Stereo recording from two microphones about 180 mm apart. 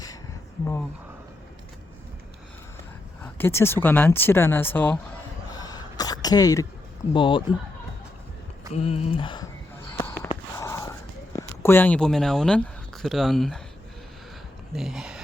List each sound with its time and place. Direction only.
0.6 s speech: 15° left (ahead or behind)
3.3 s speech: 10° left (ahead or behind)
5.5 s gasp: 20° left (ahead or behind)
7.1 s speech: 25° left (ahead or behind)
8.7 s speech: 35° left (ahead or behind)
10.0 s a sound: 15° left (ahead or behind)
11.3 s speech: 15° left (ahead or behind)
14.7 s speech: 5° right (ahead or behind)